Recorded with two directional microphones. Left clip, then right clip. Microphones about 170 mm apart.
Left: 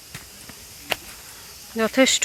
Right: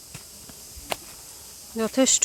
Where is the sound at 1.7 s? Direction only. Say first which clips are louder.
Left 4 dB; 15° right (ahead or behind).